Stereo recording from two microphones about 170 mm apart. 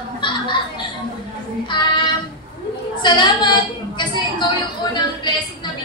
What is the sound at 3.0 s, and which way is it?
A woman's voice, 25° left (ahead or behind).